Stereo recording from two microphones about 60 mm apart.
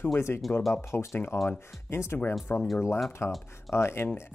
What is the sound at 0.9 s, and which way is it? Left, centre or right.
Speech, left.